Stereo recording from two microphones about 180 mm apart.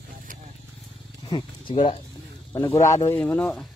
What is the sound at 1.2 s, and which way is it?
Speech, 30° left (ahead or behind).